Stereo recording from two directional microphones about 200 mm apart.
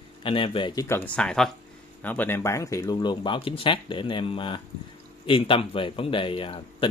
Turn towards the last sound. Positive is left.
turn(degrees=25)  # may be behind; listen again after turning